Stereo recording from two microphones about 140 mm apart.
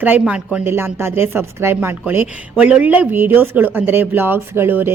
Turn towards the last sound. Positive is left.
turn(degrees=-15)  # may be behind; listen again after turning